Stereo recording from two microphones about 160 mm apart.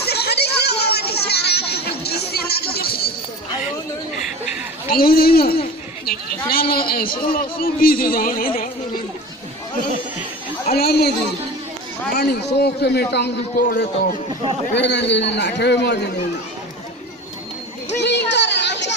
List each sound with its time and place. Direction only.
0.0 s a sound: 90° left; by 3.0 s 75° left (ahead or behind)
4.9 s a man's voice: 70° left (ahead or behind)
10.7 s a woman's voice: 80° left
12.2 s a man's voice: 90° left
13.6 s a man's voice: 60° left (ahead or behind)
14.7 s a man's voice: 90° left
17.9 s a sound: 90° left